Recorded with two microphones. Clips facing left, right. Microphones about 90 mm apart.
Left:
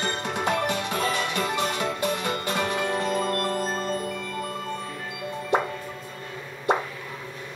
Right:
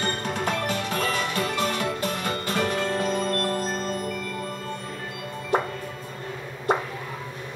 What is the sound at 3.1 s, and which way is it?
Marimba, 15° left (ahead or behind).